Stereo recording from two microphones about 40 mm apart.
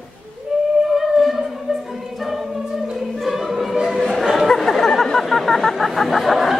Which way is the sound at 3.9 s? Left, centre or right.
Centre.